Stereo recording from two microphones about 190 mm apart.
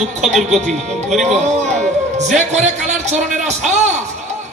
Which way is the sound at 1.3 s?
35° right (ahead or behind).